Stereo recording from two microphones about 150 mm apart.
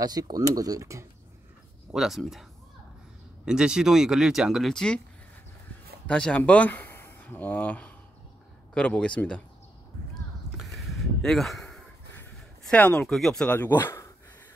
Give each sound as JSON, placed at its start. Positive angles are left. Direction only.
{"t": 0.0, "sound": "speech", "side_deg": -25}
{"t": 1.9, "sound": "speech", "side_deg": -5}
{"t": 3.4, "sound": "speech", "side_deg": -5}
{"t": 6.0, "sound": "a man's voice", "side_deg": 5}
{"t": 10.6, "sound": "a sound", "side_deg": 0}